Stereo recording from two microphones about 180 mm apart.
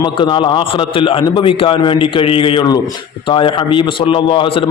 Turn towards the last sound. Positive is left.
turn(degrees=30)  # may be behind; listen again after turning